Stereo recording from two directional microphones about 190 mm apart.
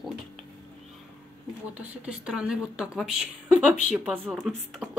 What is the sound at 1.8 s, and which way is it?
A woman's voice, 5° right (ahead or behind).